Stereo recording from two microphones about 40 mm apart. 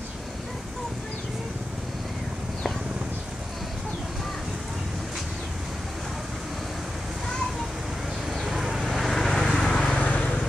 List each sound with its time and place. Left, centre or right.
8.5 s vehicle: centre
8.8 s vehicle: centre
9.7 s vehicle: left
9.9 s vehicle: left